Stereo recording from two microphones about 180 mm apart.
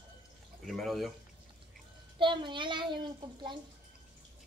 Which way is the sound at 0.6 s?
Centre (ahead or behind).